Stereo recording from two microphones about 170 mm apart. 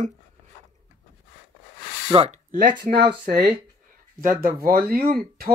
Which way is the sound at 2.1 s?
35° right (ahead or behind).